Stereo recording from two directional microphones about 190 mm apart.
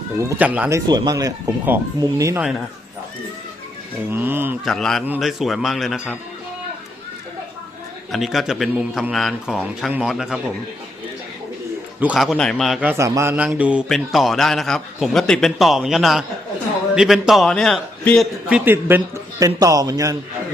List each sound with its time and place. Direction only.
0.2 s a man's voice: 10° right (ahead or behind)
0.9 s a man's voice: 20° right (ahead or behind)
4.1 s a man's voice: 10° right (ahead or behind)
4.6 s a man's voice: centre (ahead or behind)
8.1 s a man's voice: centre (ahead or behind)
11.9 s a man's voice: 5° right (ahead or behind)
18.4 s a man's voice: 10° right (ahead or behind)